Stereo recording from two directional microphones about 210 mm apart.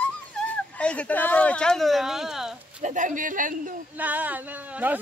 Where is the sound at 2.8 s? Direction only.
35° right (ahead or behind).